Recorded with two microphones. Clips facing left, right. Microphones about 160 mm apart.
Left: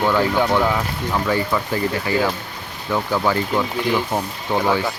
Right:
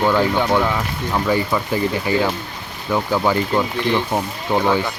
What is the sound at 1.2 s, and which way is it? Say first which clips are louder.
Speech: right 2 dB; 10° right (ahead or behind).